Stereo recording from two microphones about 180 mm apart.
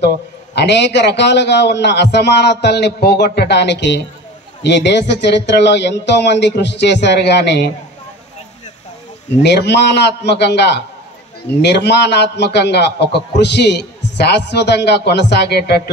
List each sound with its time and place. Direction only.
0.6 s a man's voice: 70° left (ahead or behind)
9.4 s a man's voice: 70° left (ahead or behind)